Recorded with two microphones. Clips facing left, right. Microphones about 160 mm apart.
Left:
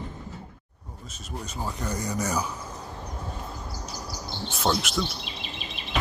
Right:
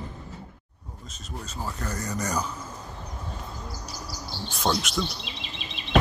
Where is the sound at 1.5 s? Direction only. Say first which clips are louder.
Left 2 dB; 15° left (ahead or behind).